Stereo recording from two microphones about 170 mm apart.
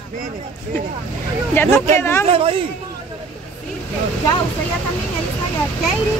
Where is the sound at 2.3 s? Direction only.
35° right (ahead or behind).